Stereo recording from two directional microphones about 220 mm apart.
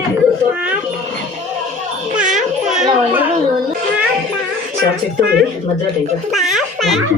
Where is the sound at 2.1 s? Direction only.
5° right (ahead or behind).